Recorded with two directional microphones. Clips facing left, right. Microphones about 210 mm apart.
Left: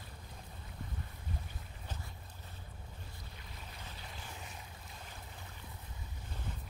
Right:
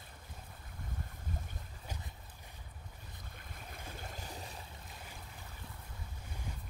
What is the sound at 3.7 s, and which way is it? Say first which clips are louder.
Boat: right 6 dB; 50° right (ahead or behind).